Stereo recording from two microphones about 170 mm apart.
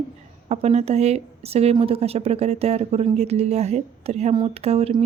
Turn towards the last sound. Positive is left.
turn(degrees=-35)  # may be behind; listen again after turning